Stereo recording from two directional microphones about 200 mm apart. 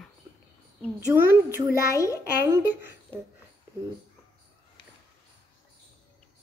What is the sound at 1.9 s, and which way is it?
Speech, 15° left (ahead or behind).